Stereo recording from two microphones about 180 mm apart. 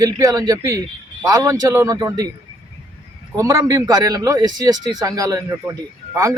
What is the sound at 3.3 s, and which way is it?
Speech, 20° right (ahead or behind).